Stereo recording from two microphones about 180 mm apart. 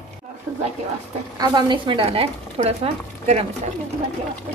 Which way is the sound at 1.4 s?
25° right (ahead or behind).